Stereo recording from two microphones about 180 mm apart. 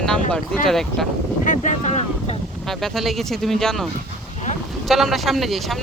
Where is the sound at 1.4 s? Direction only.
45° left (ahead or behind).